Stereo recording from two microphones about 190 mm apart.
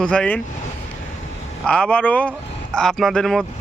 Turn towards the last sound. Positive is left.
turn(degrees=0)  # may be behind; listen again after turning